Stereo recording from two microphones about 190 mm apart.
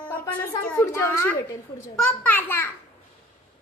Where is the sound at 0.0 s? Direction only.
10° left (ahead or behind).